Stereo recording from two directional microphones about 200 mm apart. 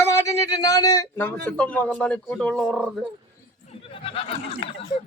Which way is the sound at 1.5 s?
5° left (ahead or behind).